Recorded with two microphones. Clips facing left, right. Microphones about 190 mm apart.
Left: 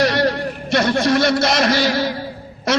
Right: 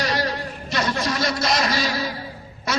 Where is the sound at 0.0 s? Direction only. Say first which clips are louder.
Left 7 dB; 65° left (ahead or behind).